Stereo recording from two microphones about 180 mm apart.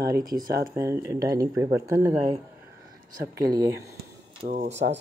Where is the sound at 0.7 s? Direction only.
15° right (ahead or behind).